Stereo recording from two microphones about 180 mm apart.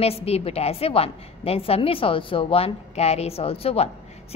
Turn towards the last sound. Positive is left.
turn(degrees=35)  # may be behind; listen again after turning